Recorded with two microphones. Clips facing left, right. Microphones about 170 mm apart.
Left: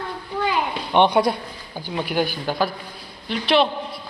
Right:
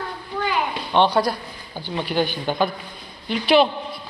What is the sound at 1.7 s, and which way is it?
A woman's voice, 10° left (ahead or behind).